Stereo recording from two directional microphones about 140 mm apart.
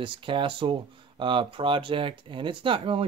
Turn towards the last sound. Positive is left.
turn(degrees=-40)  # may be behind; listen again after turning